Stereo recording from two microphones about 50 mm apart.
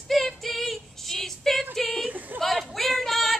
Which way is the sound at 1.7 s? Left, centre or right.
Centre.